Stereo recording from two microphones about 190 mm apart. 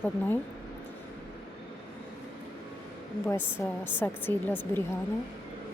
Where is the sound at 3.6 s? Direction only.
10° left (ahead or behind).